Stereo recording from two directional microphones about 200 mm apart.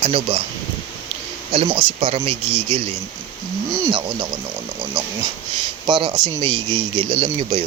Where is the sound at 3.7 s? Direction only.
15° right (ahead or behind).